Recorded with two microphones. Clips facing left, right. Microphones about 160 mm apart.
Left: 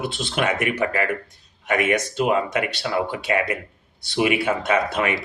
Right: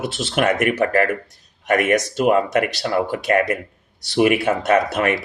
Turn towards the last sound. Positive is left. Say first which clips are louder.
# right 4 dB
turn(degrees=-45)  # may be behind; listen again after turning